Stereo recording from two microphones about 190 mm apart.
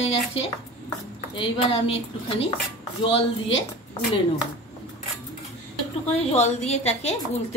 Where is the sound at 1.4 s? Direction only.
30° left (ahead or behind).